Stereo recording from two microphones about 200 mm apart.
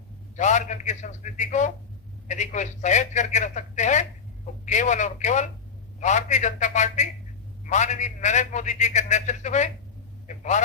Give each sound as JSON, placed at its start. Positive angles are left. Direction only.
{"t": 0.3, "sound": "a man's voice", "side_deg": 35}